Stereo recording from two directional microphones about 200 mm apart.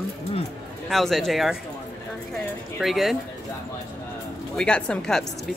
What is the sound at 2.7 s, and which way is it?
Speech, centre (ahead or behind).